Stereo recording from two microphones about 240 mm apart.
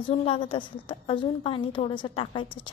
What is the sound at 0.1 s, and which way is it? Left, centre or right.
Speech, left.